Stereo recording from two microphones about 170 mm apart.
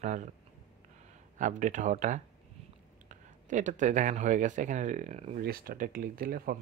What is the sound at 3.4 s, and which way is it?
Speech, 45° right (ahead or behind).